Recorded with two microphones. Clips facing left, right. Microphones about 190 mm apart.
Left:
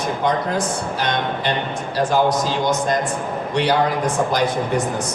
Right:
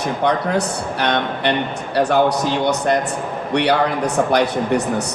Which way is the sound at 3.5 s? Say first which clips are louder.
Right 2 dB; 65° right (ahead or behind).